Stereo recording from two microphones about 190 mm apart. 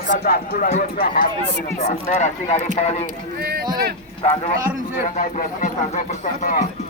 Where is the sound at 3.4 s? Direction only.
55° right (ahead or behind).